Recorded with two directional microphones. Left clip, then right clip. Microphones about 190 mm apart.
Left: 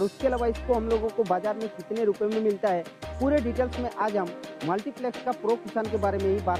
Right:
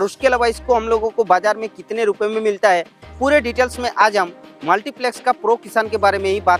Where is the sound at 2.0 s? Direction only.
20° right (ahead or behind).